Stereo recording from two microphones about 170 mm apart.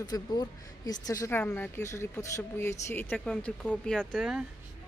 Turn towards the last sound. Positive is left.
turn(degrees=-5)  # may be behind; listen again after turning